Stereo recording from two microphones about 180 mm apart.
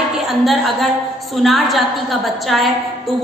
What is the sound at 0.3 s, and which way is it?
A woman's voice, centre (ahead or behind).